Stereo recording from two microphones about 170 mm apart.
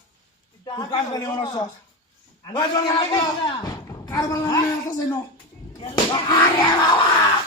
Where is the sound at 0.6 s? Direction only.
25° left (ahead or behind).